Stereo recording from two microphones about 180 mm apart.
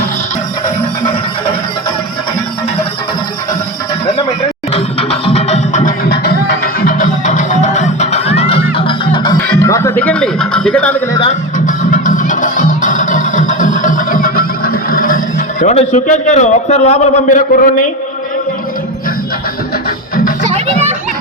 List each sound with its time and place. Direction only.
4.7 s music: 35° left (ahead or behind)
6.1 s music: 60° left (ahead or behind); by 11.0 s 5° left (ahead or behind)
11.3 s music: 45° left (ahead or behind)
15.6 s a man's voice: 40° left (ahead or behind)
20.4 s children playing: 35° right (ahead or behind)